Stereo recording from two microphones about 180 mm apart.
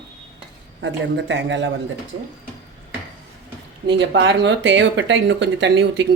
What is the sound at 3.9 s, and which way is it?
Speech, 75° right (ahead or behind).